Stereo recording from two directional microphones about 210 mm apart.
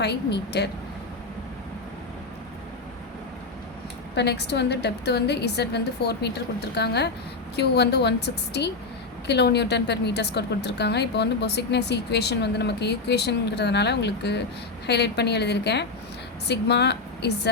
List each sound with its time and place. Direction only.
0.0 s a woman's voice: 50° left (ahead or behind)
4.1 s a woman's voice: 55° left (ahead or behind)